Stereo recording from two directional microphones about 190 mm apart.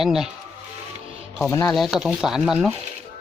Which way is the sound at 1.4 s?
15° left (ahead or behind).